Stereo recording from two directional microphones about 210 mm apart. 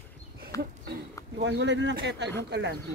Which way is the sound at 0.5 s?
15° left (ahead or behind).